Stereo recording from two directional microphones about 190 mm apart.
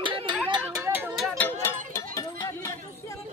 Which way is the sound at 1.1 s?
5° left (ahead or behind).